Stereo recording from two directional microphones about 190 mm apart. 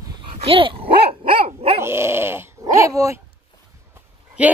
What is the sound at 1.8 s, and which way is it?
Dog, 15° right (ahead or behind).